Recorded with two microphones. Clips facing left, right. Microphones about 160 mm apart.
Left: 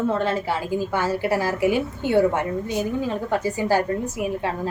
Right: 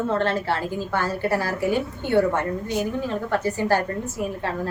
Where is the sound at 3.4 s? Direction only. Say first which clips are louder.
Even; 10° left (ahead or behind).